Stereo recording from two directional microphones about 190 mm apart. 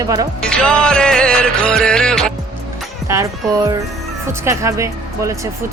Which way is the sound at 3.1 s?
15° right (ahead or behind).